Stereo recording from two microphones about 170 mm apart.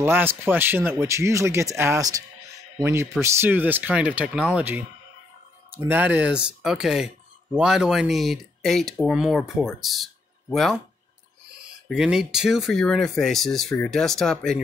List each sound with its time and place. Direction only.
0.0 s speech: 10° right (ahead or behind); by 14.6 s 5° left (ahead or behind)